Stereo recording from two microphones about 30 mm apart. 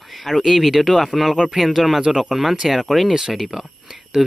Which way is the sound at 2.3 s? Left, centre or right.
Centre.